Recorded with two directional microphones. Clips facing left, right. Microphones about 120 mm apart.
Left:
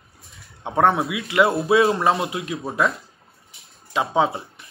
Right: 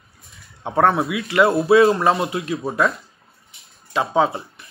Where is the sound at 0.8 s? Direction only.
15° left (ahead or behind).